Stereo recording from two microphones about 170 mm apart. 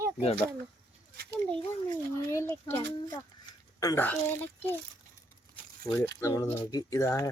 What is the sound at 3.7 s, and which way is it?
Speech, 15° left (ahead or behind).